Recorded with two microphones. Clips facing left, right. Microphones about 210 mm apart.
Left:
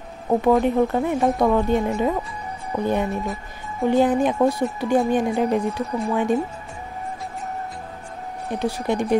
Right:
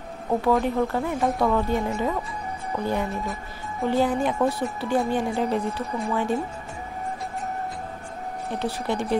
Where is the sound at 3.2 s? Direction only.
Centre (ahead or behind).